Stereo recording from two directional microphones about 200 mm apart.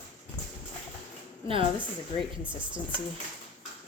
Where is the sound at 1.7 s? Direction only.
5° right (ahead or behind).